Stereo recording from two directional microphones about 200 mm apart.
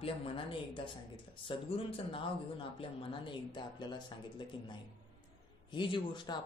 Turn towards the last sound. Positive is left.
turn(degrees=20)  # may be behind; listen again after turning